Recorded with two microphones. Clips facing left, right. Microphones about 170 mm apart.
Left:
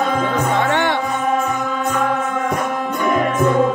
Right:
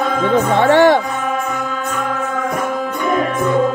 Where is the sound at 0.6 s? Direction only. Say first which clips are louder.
Right 8 dB; 40° right (ahead or behind).